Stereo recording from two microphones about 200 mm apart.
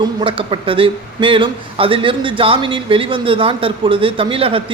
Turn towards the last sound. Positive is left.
turn(degrees=-25)  # may be behind; listen again after turning